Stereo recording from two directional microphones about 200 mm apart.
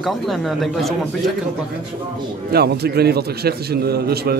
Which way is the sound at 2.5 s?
50° right (ahead or behind).